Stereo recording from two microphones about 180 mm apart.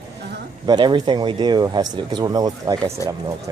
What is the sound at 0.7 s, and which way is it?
Speech, 25° right (ahead or behind).